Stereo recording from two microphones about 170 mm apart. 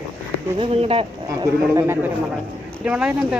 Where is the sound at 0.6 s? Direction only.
35° right (ahead or behind).